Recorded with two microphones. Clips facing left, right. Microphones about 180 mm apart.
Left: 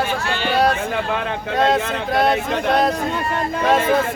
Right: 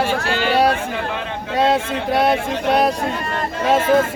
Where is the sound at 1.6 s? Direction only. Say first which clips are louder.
Right 1 dB; 10° right (ahead or behind).